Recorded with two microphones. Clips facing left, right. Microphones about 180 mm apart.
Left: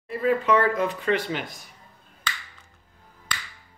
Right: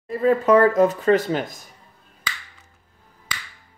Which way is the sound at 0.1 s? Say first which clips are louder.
Right 5 dB; 40° right (ahead or behind).